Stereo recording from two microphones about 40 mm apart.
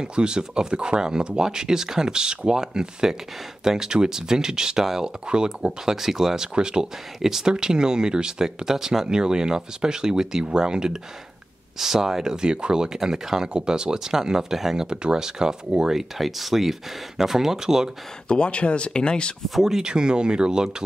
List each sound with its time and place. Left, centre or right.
0.0 s speech: right
5.3 s speech: centre
7.2 s speech: centre
14.9 s speech: right
18.3 s speech: left
19.6 s speech: centre